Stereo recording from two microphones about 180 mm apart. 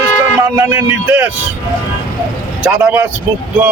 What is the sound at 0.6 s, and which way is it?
Speech, 10° right (ahead or behind).